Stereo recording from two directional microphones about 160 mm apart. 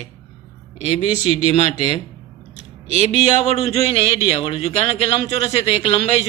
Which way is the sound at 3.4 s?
40° left (ahead or behind).